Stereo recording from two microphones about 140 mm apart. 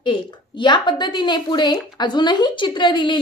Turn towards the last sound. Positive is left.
turn(degrees=35)  # may be behind; listen again after turning